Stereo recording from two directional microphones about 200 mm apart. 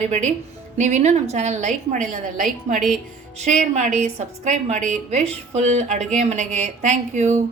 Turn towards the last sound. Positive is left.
turn(degrees=-35)  # may be behind; listen again after turning